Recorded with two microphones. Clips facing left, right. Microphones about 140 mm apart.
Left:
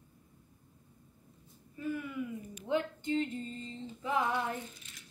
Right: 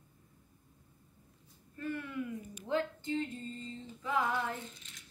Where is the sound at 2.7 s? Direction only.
20° left (ahead or behind).